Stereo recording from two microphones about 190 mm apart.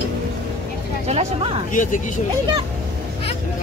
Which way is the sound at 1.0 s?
30° right (ahead or behind).